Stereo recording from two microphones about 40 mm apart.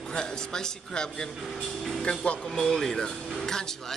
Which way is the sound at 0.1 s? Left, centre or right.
Centre.